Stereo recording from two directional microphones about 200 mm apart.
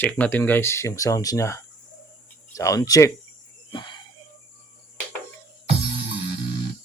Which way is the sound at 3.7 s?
25° left (ahead or behind).